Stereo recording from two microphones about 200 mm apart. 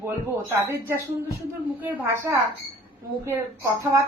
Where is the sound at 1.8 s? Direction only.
10° right (ahead or behind).